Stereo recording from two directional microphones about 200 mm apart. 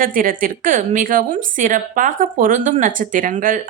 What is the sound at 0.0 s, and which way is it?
A woman's voice, 45° right (ahead or behind).